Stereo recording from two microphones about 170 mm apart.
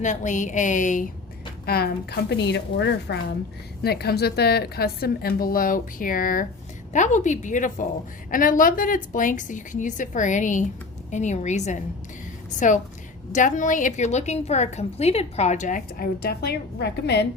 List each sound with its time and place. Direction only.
0.0 s a woman's voice: 45° left (ahead or behind)
1.6 s a woman's voice: 65° left (ahead or behind); by 3.3 s 90° left
3.8 s a woman's voice: 70° left (ahead or behind)